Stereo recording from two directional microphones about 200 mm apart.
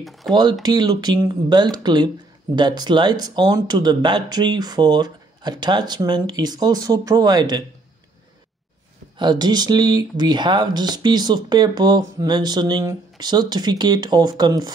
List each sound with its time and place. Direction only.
0.3 s speech: 20° right (ahead or behind)
9.2 s speech: 20° right (ahead or behind)